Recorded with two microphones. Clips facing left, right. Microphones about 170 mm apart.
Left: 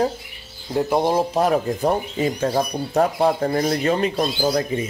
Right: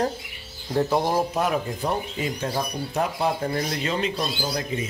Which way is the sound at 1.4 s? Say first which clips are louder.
Left 6 dB; 35° left (ahead or behind).